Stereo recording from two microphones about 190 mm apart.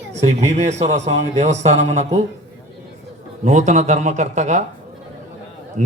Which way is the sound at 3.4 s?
40° right (ahead or behind).